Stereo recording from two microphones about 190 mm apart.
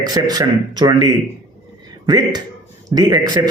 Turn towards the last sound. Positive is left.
turn(degrees=-20)  # may be behind; listen again after turning